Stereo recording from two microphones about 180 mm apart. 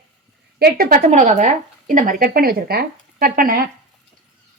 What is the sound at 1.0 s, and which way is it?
Speech, 40° right (ahead or behind).